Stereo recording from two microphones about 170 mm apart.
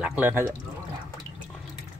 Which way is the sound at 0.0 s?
10° right (ahead or behind).